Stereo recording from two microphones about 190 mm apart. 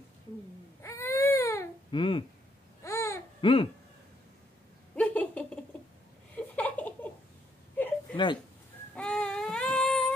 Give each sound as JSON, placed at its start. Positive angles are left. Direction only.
{"t": 0.8, "sound": "baby cry", "side_deg": 15}
{"t": 1.9, "sound": "speech", "side_deg": 25}
{"t": 2.8, "sound": "babbling", "side_deg": 15}
{"t": 3.3, "sound": "speech", "side_deg": 25}
{"t": 4.9, "sound": "a sound", "side_deg": 10}
{"t": 7.7, "sound": "whimper", "side_deg": 10}
{"t": 8.9, "sound": "child singing", "side_deg": 5}